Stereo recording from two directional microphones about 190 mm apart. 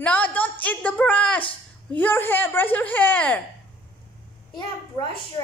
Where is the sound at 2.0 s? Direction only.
10° left (ahead or behind).